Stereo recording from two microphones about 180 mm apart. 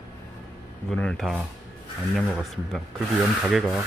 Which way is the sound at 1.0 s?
5° left (ahead or behind).